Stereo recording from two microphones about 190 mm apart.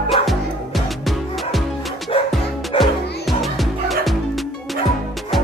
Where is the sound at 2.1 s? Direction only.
30° left (ahead or behind).